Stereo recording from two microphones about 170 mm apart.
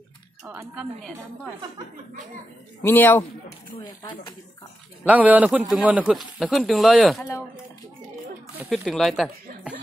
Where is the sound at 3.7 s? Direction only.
25° left (ahead or behind).